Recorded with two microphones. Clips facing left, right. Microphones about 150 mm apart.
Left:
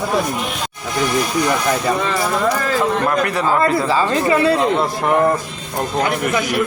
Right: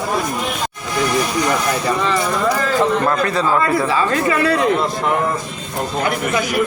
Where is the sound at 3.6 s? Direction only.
30° left (ahead or behind).